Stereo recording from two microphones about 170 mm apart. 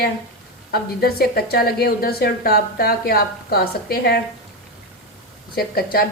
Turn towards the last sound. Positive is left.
turn(degrees=60)  # may be behind; listen again after turning